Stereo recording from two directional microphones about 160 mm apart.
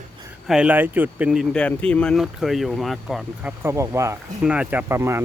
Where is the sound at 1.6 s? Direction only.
10° left (ahead or behind); by 4.2 s 20° right (ahead or behind).